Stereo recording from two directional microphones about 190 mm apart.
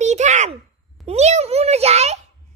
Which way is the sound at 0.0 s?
35° right (ahead or behind).